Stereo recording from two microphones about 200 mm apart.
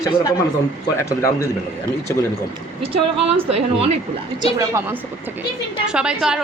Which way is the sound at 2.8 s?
30° right (ahead or behind).